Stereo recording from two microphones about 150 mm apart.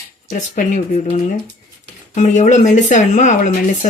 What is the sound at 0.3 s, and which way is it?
Speech, 60° left (ahead or behind).